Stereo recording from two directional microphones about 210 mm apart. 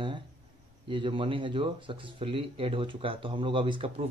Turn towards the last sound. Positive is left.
turn(degrees=-25)  # may be behind; listen again after turning